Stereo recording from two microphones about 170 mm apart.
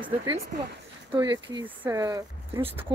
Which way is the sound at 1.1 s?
25° right (ahead or behind).